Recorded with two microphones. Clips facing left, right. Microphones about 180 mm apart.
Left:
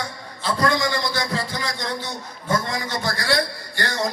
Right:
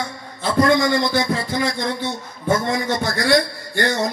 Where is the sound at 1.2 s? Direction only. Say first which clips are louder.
Right 5 dB; 25° right (ahead or behind).